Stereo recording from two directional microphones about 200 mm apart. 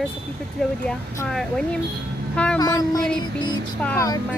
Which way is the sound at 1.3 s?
Centre (ahead or behind).